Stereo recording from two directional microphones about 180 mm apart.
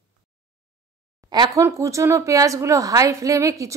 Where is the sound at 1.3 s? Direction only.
25° right (ahead or behind).